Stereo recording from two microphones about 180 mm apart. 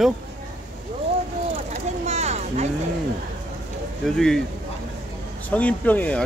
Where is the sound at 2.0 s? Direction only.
35° right (ahead or behind).